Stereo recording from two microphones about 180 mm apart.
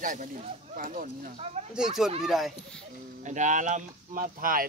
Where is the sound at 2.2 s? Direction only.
Centre (ahead or behind).